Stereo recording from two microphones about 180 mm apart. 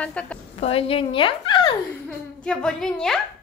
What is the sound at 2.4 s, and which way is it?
Speech, 5° left (ahead or behind).